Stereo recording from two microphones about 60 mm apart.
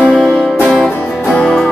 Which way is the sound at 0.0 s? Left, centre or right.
Centre.